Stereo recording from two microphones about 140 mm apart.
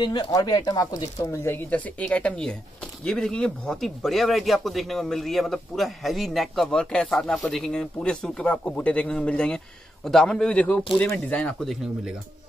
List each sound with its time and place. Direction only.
0.0 s speech: 30° left (ahead or behind); by 12.1 s centre (ahead or behind)